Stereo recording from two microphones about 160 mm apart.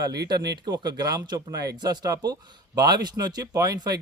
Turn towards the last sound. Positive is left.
turn(degrees=-25)  # may be behind; listen again after turning